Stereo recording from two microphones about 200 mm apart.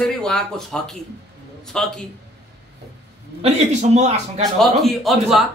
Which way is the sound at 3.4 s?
35° right (ahead or behind).